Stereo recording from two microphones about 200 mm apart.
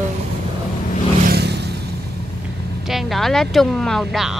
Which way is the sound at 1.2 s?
55° right (ahead or behind).